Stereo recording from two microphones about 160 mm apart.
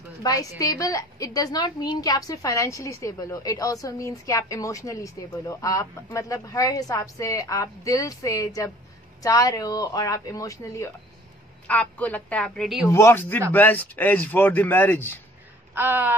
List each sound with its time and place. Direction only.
0.2 s a woman's voice: 20° left (ahead or behind)
11.6 s speech: 10° left (ahead or behind)
12.9 s speech: 15° left (ahead or behind)
15.7 s a sound: 10° right (ahead or behind)